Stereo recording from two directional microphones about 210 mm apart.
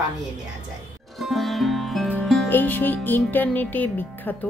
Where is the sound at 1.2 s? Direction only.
Centre (ahead or behind).